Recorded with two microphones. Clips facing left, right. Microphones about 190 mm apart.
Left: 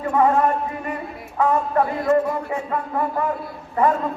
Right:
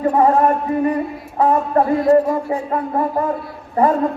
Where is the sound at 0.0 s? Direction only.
35° right (ahead or behind).